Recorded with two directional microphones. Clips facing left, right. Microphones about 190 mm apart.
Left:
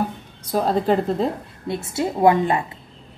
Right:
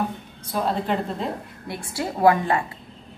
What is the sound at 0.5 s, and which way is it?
Speech, 40° left (ahead or behind).